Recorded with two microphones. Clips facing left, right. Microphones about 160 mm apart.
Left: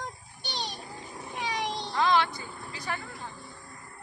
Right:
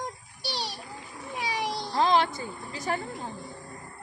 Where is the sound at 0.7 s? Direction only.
30° left (ahead or behind).